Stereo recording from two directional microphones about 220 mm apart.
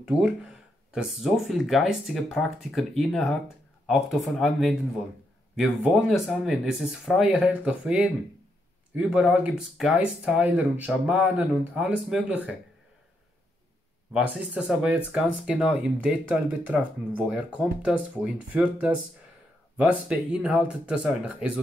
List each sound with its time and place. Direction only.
0.0 s speech: 5° right (ahead or behind)
14.1 s speech: 5° right (ahead or behind)